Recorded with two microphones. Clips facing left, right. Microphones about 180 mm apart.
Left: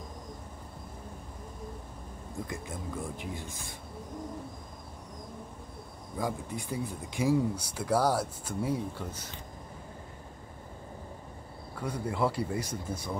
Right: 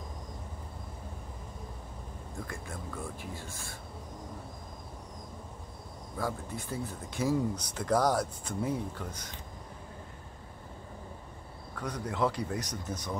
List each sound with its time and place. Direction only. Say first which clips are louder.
2.4 s speech: left 3 dB; 20° left (ahead or behind)
6.1 s speech: left 2 dB; 15° left (ahead or behind)
11.7 s speech: left 2 dB; 5° left (ahead or behind)